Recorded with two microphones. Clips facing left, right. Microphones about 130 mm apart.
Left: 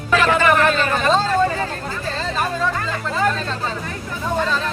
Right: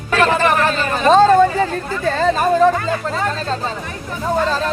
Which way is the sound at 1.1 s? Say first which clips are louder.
Right 9 dB; 50° right (ahead or behind).